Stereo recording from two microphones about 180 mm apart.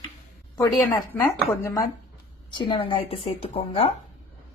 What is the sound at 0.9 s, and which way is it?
A woman's voice, 15° left (ahead or behind).